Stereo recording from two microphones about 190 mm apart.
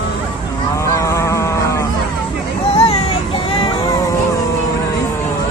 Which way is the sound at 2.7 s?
30° left (ahead or behind).